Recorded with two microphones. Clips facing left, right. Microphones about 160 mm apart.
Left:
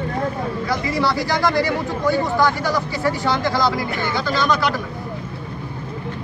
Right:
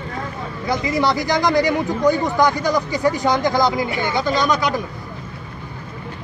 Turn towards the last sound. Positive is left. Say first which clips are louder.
# right 1 dB
turn(degrees=-20)  # may be behind; listen again after turning